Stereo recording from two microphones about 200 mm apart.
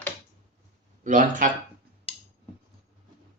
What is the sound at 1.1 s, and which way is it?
Speech, 40° right (ahead or behind).